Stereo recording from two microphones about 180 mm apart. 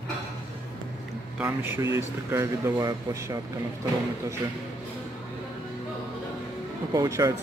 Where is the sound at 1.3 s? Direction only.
10° right (ahead or behind).